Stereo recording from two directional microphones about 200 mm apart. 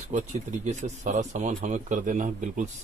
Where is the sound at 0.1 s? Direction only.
35° right (ahead or behind).